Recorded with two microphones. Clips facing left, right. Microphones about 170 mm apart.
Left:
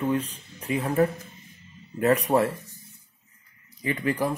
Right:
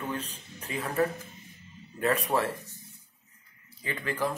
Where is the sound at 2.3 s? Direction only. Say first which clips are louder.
Left 7 dB; 25° left (ahead or behind).